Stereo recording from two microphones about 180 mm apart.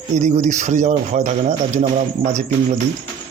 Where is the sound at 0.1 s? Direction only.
40° right (ahead or behind).